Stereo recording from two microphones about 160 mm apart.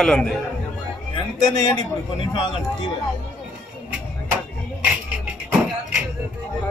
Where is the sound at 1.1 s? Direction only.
30° left (ahead or behind).